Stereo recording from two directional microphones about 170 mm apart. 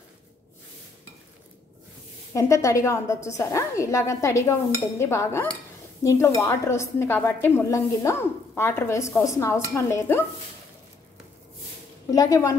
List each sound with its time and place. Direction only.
2.3 s a woman's voice: 20° left (ahead or behind)
12.1 s a woman's voice: 20° left (ahead or behind)